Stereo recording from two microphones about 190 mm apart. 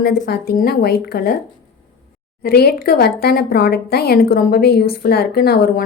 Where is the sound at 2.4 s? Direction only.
55° left (ahead or behind).